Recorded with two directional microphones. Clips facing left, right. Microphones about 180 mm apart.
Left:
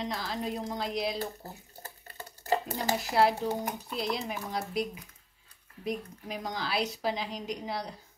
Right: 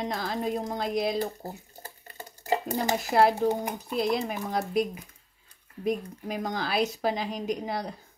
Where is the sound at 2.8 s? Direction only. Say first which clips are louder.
Right 4 dB; 50° right (ahead or behind).